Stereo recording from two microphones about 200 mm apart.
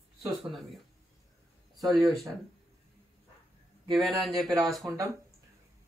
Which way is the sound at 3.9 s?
Centre (ahead or behind).